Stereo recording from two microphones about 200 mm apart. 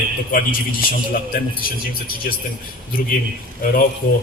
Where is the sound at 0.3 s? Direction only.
45° left (ahead or behind).